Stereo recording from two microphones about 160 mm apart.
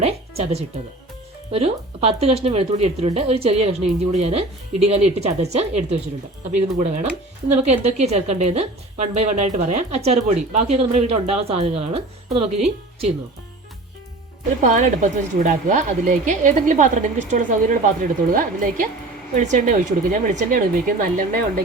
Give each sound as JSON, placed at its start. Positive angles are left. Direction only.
{"t": 0.0, "sound": "a woman's voice", "side_deg": -40}
{"t": 14.6, "sound": "a woman's voice", "side_deg": -50}